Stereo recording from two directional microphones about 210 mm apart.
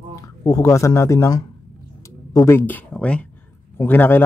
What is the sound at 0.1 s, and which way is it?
Speech, 15° left (ahead or behind).